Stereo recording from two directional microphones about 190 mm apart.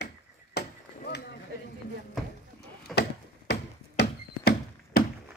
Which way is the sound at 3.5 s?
60° left (ahead or behind).